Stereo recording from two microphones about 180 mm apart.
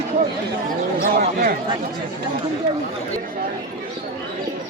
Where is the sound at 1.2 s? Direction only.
60° right (ahead or behind).